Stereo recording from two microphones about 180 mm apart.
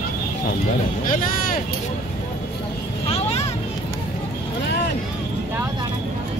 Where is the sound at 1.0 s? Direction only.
50° left (ahead or behind).